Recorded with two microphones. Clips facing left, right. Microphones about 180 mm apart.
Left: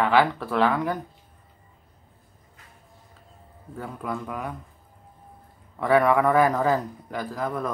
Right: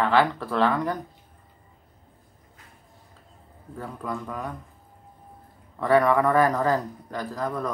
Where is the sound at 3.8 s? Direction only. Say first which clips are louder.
Left 1 dB; 5° left (ahead or behind).